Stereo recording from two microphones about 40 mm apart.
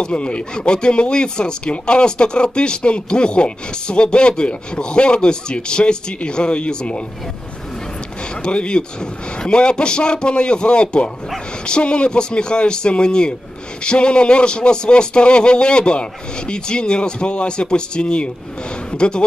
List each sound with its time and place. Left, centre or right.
0.0 s speech: left
8.4 s a man's voice: left